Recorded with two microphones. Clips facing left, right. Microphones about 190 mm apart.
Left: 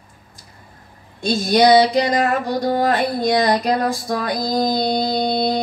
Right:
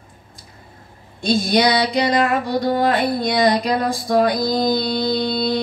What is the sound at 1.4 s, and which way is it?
Speech, 50° left (ahead or behind).